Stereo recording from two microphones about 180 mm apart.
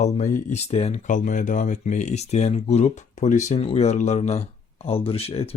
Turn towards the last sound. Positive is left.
turn(degrees=35)  # may be behind; listen again after turning